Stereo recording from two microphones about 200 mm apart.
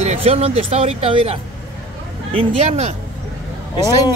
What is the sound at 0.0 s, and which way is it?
Speech, 30° right (ahead or behind).